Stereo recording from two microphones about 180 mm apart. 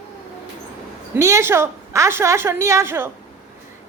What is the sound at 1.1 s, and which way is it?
A woman's voice, 15° right (ahead or behind).